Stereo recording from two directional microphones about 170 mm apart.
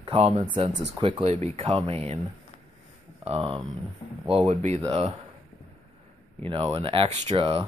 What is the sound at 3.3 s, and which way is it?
Speech, 30° right (ahead or behind).